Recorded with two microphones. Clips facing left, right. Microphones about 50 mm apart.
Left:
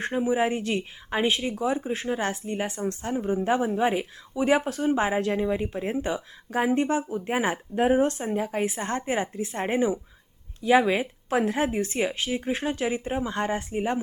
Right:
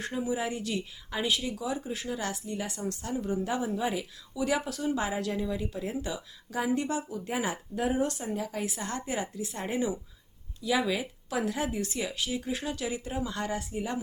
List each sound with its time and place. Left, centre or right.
0.0 s speech: left